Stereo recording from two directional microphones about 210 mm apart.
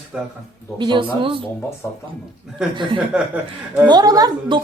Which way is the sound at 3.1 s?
5° right (ahead or behind).